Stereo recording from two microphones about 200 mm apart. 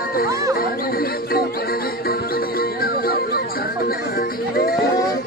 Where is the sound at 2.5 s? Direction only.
50° left (ahead or behind).